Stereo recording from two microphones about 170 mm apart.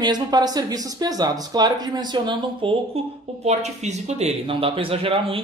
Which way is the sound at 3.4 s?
40° right (ahead or behind).